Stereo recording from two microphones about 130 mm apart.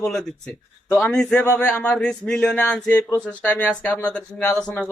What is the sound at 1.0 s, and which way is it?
A man's voice, 5° left (ahead or behind).